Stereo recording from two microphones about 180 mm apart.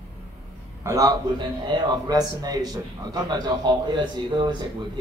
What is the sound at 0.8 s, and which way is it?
A man's voice, 20° right (ahead or behind).